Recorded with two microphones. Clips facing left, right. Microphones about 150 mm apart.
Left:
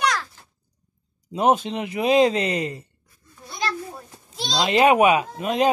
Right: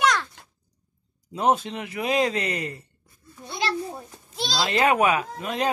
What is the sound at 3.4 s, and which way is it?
Children playing, 30° right (ahead or behind).